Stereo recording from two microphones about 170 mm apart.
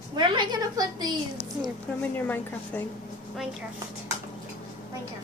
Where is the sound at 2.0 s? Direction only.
10° left (ahead or behind).